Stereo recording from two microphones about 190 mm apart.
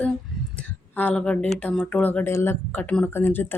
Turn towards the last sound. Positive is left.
turn(degrees=10)  # may be behind; listen again after turning